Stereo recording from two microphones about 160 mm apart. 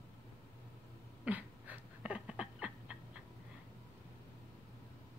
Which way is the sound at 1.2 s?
10° right (ahead or behind).